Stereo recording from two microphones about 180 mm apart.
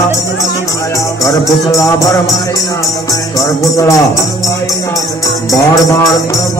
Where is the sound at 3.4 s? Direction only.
20° left (ahead or behind).